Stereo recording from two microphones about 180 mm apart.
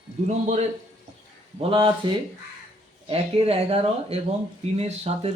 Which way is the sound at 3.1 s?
35° right (ahead or behind).